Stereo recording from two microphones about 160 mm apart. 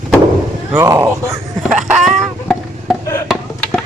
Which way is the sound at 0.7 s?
15° right (ahead or behind).